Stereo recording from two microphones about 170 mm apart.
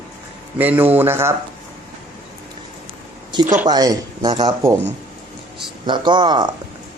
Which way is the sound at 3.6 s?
20° right (ahead or behind).